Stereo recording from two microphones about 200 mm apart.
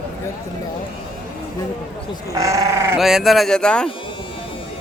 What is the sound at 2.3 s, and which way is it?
Speech, 15° right (ahead or behind).